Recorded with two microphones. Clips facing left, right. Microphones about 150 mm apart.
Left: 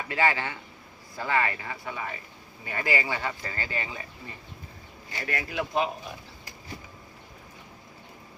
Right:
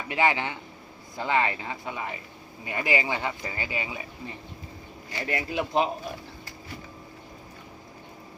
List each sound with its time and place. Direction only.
0.1 s speech: 20° right (ahead or behind)
5.3 s speech: 20° right (ahead or behind)